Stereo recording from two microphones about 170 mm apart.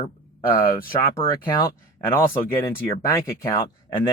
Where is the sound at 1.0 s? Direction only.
20° left (ahead or behind).